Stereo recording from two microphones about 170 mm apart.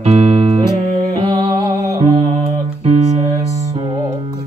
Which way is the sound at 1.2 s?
30° right (ahead or behind).